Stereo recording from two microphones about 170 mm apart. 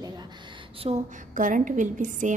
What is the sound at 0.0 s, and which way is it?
A woman's voice, 25° right (ahead or behind).